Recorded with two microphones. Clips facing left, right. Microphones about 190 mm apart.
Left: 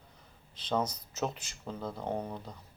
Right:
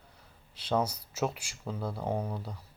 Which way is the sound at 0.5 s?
10° right (ahead or behind).